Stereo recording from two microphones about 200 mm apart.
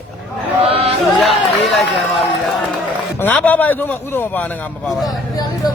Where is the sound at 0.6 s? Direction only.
30° right (ahead or behind).